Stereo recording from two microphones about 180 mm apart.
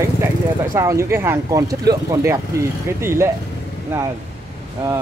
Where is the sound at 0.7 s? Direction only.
15° right (ahead or behind).